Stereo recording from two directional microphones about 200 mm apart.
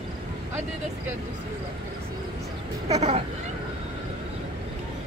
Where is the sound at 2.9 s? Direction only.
35° right (ahead or behind).